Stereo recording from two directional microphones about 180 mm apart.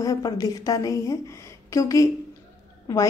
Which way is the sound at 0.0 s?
20° left (ahead or behind).